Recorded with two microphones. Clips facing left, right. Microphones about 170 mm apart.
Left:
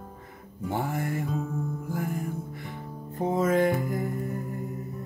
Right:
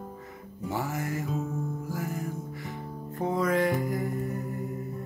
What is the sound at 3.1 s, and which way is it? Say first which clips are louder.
Music: left 2 dB; 20° left (ahead or behind).